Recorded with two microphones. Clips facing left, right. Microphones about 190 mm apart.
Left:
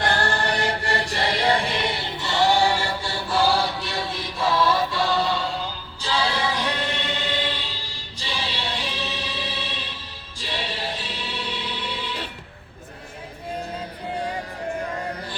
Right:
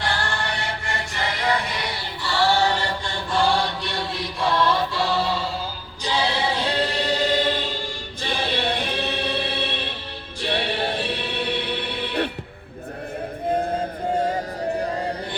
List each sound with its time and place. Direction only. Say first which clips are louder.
0.0 s chant: left 3 dB; 40° left (ahead or behind); by 5.5 s centre (ahead or behind)
6.0 s choir: right 1 dB; 20° right (ahead or behind); by 10.0 s 60° right (ahead or behind)
10.4 s music: right 6 dB; 60° right (ahead or behind)
13.6 s music: right 7 dB; 45° right (ahead or behind)
14.9 s music: right 4 dB; 30° right (ahead or behind)